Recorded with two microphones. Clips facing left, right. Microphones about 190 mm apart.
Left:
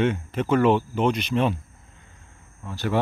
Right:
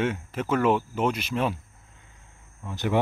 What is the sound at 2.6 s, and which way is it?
Speech, 15° right (ahead or behind).